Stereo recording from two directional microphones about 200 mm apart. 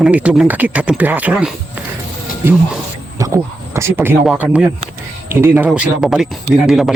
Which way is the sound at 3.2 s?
15° right (ahead or behind).